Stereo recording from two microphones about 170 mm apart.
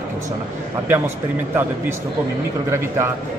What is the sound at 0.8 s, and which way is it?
Speech, 15° right (ahead or behind).